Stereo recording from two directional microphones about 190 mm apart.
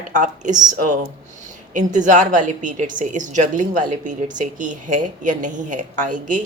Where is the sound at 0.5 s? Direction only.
20° right (ahead or behind).